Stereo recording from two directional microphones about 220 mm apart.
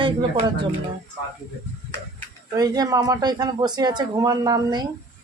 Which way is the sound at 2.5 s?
15° right (ahead or behind).